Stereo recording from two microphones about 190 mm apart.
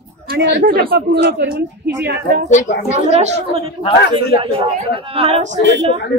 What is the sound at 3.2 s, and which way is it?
Speech, 30° right (ahead or behind).